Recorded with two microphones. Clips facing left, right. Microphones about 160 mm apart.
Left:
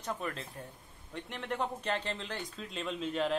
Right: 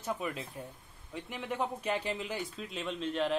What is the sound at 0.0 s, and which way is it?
Speech, 5° right (ahead or behind).